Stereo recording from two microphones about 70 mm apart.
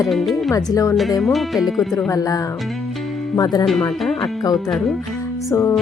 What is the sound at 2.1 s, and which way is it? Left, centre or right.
Speech, left.